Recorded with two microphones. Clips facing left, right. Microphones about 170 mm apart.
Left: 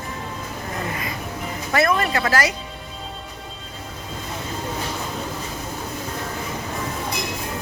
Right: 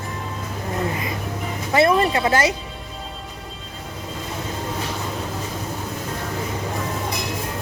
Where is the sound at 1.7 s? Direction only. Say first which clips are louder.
Right 3 dB; 30° right (ahead or behind).